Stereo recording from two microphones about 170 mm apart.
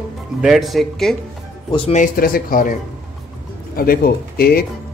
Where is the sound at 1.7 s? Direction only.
35° left (ahead or behind).